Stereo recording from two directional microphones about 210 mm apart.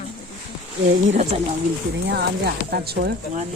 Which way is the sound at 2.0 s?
50° right (ahead or behind).